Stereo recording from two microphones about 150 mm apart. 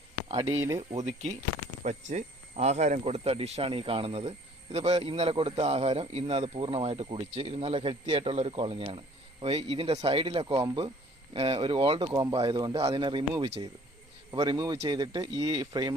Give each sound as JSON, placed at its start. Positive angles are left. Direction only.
{"t": 0.3, "sound": "speech", "side_deg": -35}
{"t": 0.5, "sound": "speech", "side_deg": -20}
{"t": 0.8, "sound": "speech", "side_deg": -45}